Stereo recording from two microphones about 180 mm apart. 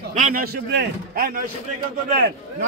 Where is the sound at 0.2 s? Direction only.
55° right (ahead or behind).